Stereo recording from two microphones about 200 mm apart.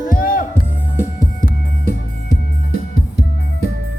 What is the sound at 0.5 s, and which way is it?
Music, 10° left (ahead or behind).